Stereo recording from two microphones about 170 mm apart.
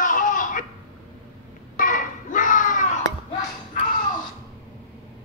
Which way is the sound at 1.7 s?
50° left (ahead or behind).